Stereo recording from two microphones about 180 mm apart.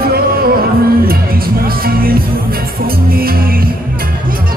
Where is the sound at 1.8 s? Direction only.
55° right (ahead or behind).